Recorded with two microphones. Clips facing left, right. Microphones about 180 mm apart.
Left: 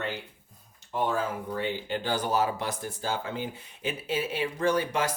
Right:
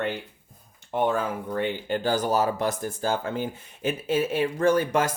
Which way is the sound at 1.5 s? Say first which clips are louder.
Right 6 dB; 55° right (ahead or behind).